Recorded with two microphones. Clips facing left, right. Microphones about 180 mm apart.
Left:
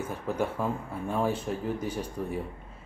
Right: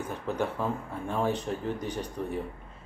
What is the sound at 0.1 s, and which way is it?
Speech, 10° left (ahead or behind).